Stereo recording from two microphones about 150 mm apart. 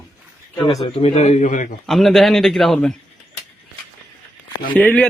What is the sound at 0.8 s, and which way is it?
Speech, 45° left (ahead or behind).